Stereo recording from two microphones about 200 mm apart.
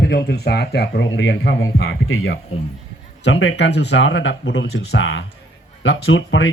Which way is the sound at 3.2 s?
65° left (ahead or behind).